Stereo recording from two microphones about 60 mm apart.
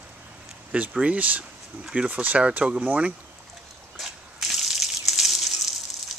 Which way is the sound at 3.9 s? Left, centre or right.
Centre.